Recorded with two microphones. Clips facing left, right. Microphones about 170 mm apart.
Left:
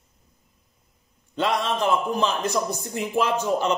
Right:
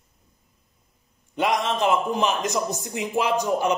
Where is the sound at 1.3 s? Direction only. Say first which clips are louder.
Right 1 dB; 15° right (ahead or behind).